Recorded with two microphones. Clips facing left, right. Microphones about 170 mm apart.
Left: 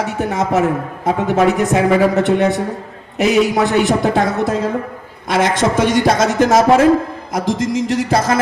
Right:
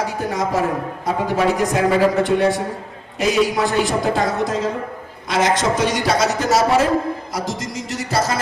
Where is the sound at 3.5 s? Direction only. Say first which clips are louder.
Left 4 dB; 60° left (ahead or behind).